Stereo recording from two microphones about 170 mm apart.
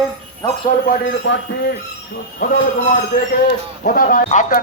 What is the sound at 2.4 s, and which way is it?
Speech, 55° left (ahead or behind).